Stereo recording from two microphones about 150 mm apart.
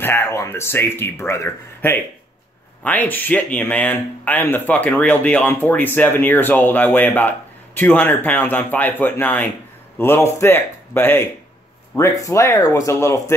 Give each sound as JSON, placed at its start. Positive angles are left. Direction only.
{"t": 0.0, "sound": "speech", "side_deg": 15}